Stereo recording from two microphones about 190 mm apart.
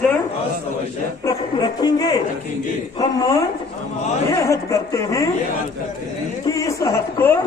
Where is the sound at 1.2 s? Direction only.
20° left (ahead or behind).